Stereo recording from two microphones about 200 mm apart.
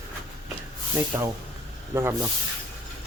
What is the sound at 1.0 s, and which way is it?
Speech, 15° right (ahead or behind).